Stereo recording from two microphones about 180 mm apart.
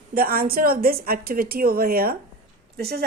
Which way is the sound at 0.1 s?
55° right (ahead or behind).